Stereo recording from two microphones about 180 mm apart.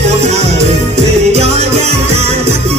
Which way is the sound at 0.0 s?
35° right (ahead or behind).